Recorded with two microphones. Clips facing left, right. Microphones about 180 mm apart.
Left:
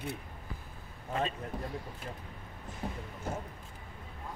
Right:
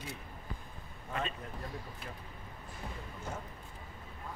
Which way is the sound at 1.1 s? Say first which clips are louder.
Left 4 dB; 30° left (ahead or behind).